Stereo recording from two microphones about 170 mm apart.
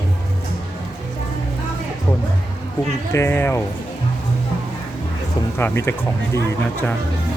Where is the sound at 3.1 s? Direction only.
15° left (ahead or behind).